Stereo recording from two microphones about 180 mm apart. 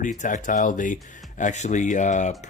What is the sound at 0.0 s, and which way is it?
Speech, 45° left (ahead or behind).